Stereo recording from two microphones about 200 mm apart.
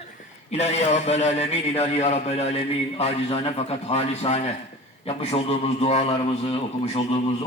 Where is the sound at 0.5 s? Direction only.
35° left (ahead or behind).